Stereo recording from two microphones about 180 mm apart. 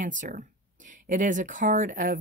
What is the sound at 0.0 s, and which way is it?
Speech, 45° right (ahead or behind).